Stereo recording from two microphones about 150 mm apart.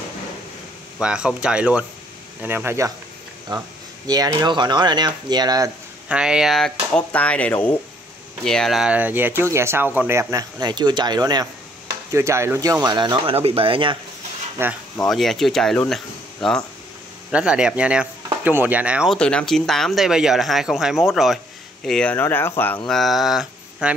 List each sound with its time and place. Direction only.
0.9 s speech: 5° right (ahead or behind)
3.5 s speech: 30° right (ahead or behind)
6.0 s speech: 5° right (ahead or behind)
12.8 s speech: 30° right (ahead or behind)
14.6 s speech: 15° right (ahead or behind)
15.0 s speech: centre (ahead or behind)
17.3 s speech: 5° right (ahead or behind)
19.1 s speech: 5° left (ahead or behind)
22.8 s speech: centre (ahead or behind)